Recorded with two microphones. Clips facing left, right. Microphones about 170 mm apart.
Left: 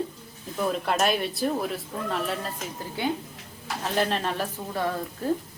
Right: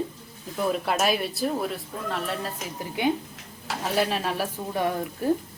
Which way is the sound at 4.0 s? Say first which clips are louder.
Even; 5° right (ahead or behind).